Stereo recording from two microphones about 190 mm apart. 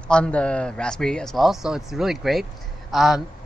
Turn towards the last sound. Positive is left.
turn(degrees=0)  # may be behind; listen again after turning